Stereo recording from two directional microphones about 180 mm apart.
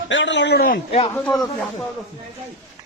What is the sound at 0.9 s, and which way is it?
Speech, 30° left (ahead or behind).